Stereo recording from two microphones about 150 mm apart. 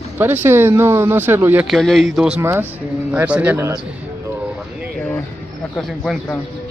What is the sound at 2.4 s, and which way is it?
Speech, 15° right (ahead or behind).